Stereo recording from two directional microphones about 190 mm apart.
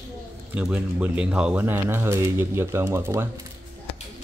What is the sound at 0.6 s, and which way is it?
Speech, 5° right (ahead or behind).